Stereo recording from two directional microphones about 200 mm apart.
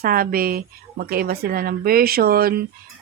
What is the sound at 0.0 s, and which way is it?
Speech, 45° right (ahead or behind).